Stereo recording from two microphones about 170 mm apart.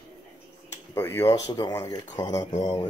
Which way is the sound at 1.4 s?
25° left (ahead or behind).